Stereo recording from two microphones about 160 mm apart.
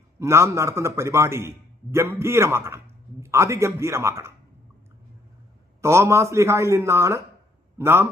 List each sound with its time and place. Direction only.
0.2 s a man's voice: 15° right (ahead or behind)
5.8 s a man's voice: 15° right (ahead or behind)